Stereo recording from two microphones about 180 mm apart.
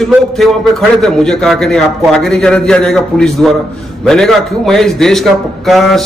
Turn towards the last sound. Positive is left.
turn(degrees=0)  # may be behind; listen again after turning